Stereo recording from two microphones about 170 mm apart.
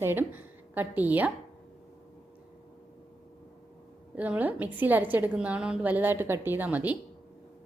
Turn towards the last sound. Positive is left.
turn(degrees=-10)  # may be behind; listen again after turning